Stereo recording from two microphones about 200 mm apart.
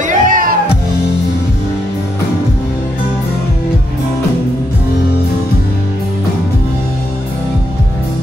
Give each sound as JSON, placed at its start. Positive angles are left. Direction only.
{"t": 0.0, "sound": "music", "side_deg": -40}